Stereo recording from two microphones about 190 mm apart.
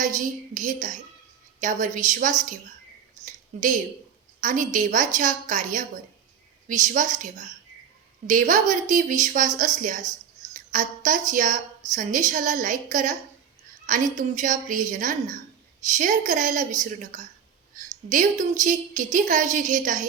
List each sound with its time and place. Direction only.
0.0 s a woman's voice: 40° right (ahead or behind)
3.2 s a sound: 40° right (ahead or behind)
4.4 s a woman's voice: 45° right (ahead or behind)